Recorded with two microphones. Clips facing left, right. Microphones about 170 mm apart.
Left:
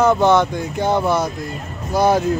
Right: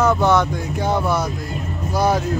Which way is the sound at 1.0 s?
25° left (ahead or behind).